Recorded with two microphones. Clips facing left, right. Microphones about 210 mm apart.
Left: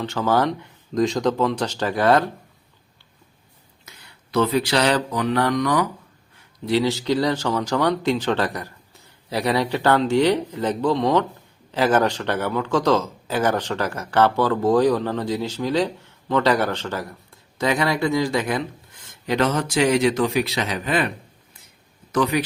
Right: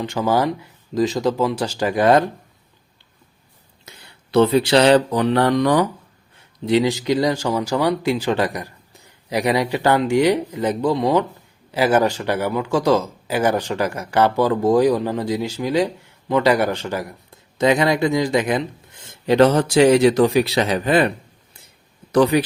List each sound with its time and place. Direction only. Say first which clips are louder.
0.0 s speech: right 1 dB; 15° right (ahead or behind)
3.8 s mantra: right 4 dB; 30° right (ahead or behind)
6.7 s speech: right 3 dB; 15° right (ahead or behind)
19.2 s speech: right 7 dB; 30° right (ahead or behind)
22.1 s speech: right 5 dB; 35° right (ahead or behind)